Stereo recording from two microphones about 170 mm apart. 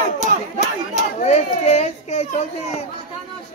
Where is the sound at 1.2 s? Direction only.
40° left (ahead or behind).